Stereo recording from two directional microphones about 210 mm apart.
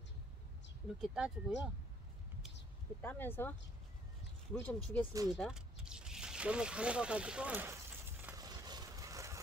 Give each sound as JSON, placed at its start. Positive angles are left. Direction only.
{"t": 1.0, "sound": "speech", "side_deg": 0}
{"t": 3.0, "sound": "speech", "side_deg": 10}
{"t": 4.6, "sound": "speech", "side_deg": 10}
{"t": 5.3, "sound": "a sound", "side_deg": 0}
{"t": 8.5, "sound": "vehicle", "side_deg": -20}